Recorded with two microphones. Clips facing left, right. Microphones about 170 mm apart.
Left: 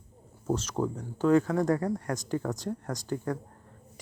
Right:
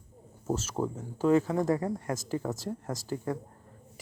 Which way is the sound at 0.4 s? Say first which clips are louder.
Left 1 dB; 5° right (ahead or behind).